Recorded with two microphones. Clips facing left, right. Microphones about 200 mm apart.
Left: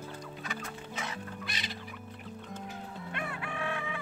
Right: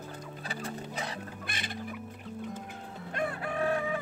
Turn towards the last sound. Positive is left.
turn(degrees=-40)  # may be behind; listen again after turning